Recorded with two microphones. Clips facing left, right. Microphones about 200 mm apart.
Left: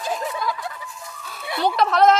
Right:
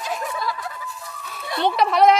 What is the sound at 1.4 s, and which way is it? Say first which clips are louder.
Music: even; 5° left (ahead or behind).